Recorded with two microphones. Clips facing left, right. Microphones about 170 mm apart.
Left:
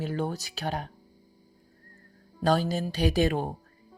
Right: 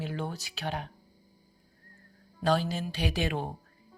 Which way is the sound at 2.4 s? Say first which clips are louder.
Left 3 dB; 40° left (ahead or behind).